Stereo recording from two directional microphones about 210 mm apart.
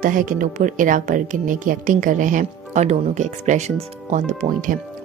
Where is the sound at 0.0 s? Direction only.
40° right (ahead or behind).